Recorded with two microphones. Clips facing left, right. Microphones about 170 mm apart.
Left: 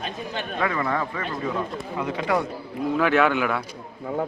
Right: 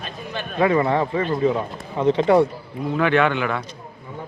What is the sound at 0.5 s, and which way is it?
Speech, 25° right (ahead or behind).